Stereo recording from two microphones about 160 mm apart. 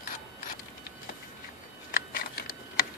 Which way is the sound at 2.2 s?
65° left (ahead or behind).